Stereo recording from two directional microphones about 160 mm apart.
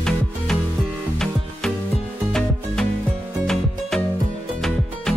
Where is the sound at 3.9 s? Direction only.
5° left (ahead or behind).